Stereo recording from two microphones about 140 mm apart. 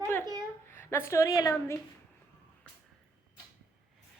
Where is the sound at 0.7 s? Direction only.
15° left (ahead or behind).